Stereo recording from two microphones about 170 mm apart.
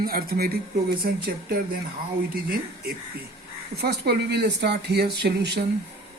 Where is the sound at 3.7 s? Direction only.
75° right (ahead or behind).